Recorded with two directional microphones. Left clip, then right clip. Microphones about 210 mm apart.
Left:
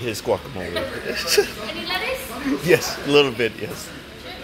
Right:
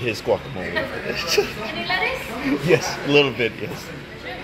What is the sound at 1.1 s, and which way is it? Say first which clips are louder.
Speech: left 2 dB; 20° left (ahead or behind).